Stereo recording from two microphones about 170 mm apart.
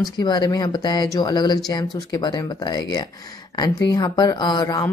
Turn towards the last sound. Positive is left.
turn(degrees=20)  # may be behind; listen again after turning